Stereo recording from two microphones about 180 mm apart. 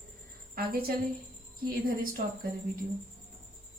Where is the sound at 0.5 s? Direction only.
55° right (ahead or behind).